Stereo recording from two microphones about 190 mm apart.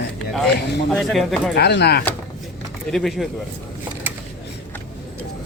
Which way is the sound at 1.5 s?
60° left (ahead or behind).